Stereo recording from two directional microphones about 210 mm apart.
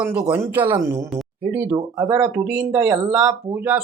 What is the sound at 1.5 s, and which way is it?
Speech, 10° right (ahead or behind).